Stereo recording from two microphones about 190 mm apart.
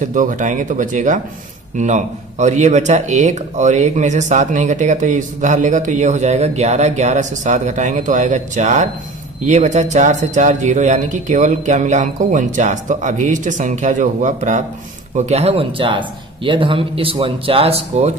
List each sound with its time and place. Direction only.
0.0 s speech: 40° right (ahead or behind)